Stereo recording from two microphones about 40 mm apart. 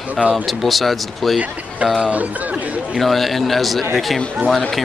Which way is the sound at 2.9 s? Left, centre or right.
Centre.